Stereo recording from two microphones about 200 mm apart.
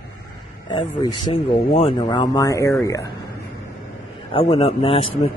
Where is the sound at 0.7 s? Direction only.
25° left (ahead or behind).